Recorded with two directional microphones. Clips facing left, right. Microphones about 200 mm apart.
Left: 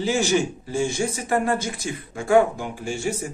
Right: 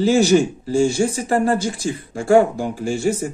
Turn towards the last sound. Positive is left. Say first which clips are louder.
# right 7 dB
turn(degrees=-35)  # may be behind; listen again after turning